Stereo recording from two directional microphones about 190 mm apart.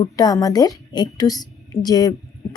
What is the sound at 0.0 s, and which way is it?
A woman's voice, 20° left (ahead or behind).